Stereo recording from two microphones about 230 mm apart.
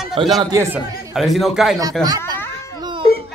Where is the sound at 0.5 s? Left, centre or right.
Centre.